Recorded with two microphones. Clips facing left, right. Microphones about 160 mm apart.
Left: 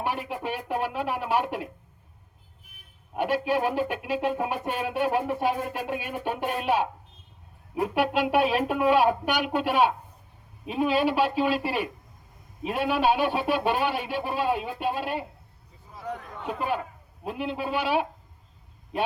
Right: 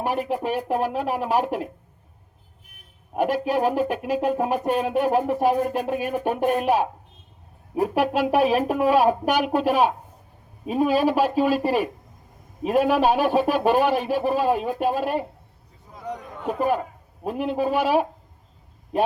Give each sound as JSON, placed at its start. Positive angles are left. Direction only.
{"t": 0.0, "sound": "speech", "side_deg": -40}
{"t": 3.2, "sound": "speech", "side_deg": -40}
{"t": 16.5, "sound": "speech", "side_deg": -45}